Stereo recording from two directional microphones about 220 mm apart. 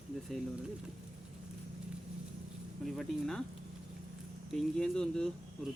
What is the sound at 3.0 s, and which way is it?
Speech, centre (ahead or behind).